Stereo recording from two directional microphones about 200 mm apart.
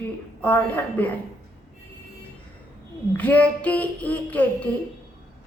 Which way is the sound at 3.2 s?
5° left (ahead or behind).